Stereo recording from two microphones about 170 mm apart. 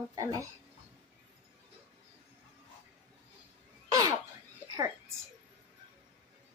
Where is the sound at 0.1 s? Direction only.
20° right (ahead or behind).